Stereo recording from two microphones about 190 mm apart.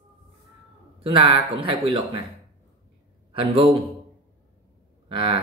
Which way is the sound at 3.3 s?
30° right (ahead or behind).